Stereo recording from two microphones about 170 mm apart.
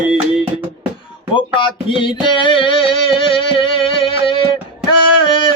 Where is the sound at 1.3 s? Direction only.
30° left (ahead or behind).